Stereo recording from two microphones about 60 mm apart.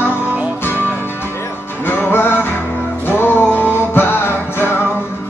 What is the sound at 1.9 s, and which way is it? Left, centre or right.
Music, left.